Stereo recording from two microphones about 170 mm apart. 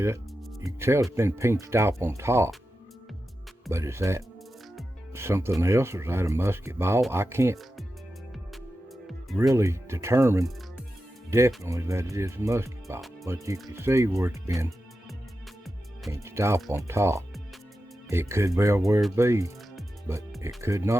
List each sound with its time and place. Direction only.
0.6 s speech: 15° right (ahead or behind)
3.7 s speech: 15° right (ahead or behind)
9.0 s music: centre (ahead or behind)
9.5 s speech: 15° right (ahead or behind)
16.2 s speech: 15° right (ahead or behind)
20.6 s speech: 15° right (ahead or behind)